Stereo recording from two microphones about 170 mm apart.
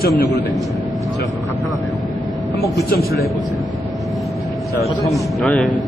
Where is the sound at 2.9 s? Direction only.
65° left (ahead or behind).